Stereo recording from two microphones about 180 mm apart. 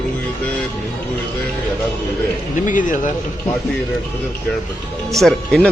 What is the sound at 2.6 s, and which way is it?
Speech, 45° left (ahead or behind).